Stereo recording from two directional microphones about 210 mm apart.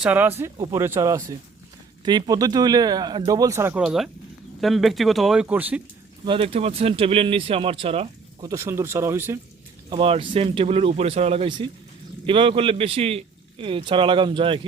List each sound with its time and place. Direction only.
0.0 s speech: 10° right (ahead or behind)
6.2 s a man's voice: 25° right (ahead or behind)
8.4 s speech: 15° right (ahead or behind)
9.9 s a man's voice: 25° right (ahead or behind)